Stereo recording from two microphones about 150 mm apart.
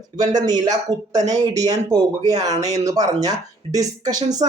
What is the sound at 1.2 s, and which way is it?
Speech, 50° right (ahead or behind).